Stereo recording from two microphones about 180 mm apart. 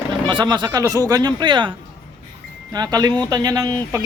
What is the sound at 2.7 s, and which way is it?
Speech, 20° right (ahead or behind).